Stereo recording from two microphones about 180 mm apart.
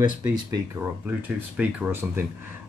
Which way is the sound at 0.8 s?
10° right (ahead or behind).